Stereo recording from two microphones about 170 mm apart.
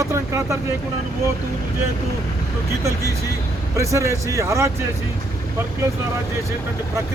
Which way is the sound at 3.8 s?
15° right (ahead or behind).